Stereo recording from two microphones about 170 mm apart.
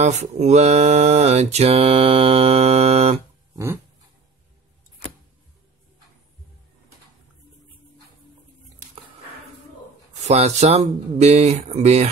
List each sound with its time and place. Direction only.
0.0 s mantra: 40° right (ahead or behind)
10.2 s speech: 40° right (ahead or behind)